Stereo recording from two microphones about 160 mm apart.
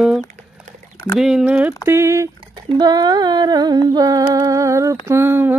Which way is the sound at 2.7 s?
25° right (ahead or behind).